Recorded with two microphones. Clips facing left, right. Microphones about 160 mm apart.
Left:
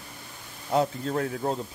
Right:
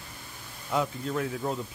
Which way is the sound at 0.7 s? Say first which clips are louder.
Left 4 dB; 40° left (ahead or behind).